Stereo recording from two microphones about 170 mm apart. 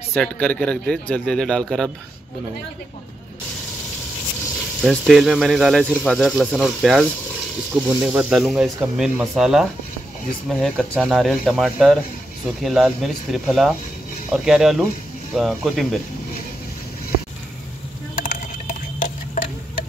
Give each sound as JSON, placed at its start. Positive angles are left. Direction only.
{"t": 0.1, "sound": "speech", "side_deg": 5}
{"t": 4.8, "sound": "speech", "side_deg": 0}
{"t": 18.2, "sound": "stir", "side_deg": 55}